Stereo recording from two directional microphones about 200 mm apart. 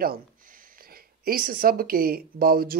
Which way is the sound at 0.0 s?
45° right (ahead or behind).